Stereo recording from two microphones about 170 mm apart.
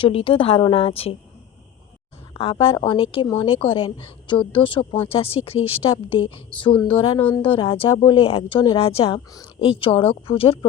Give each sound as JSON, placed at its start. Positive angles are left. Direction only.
{"t": 0.0, "sound": "a woman's voice", "side_deg": 30}
{"t": 2.4, "sound": "a woman's voice", "side_deg": 30}